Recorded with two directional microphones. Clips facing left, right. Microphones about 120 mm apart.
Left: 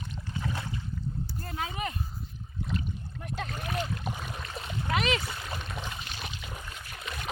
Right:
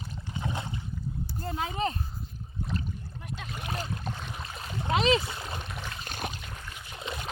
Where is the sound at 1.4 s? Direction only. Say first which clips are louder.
Right 5 dB; 20° right (ahead or behind).